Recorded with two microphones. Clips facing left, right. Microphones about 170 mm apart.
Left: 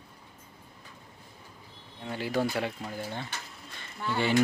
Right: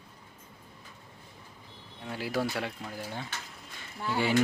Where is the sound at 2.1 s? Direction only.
5° right (ahead or behind).